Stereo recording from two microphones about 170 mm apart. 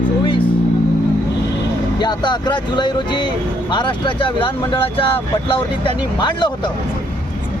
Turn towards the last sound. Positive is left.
turn(degrees=25)  # may be behind; listen again after turning